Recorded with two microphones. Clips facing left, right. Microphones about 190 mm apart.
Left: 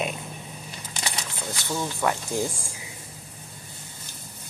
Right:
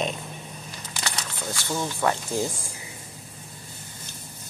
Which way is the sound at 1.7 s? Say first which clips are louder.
Even; 15° right (ahead or behind).